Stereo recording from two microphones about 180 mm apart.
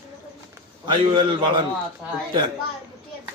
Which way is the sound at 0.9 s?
25° right (ahead or behind).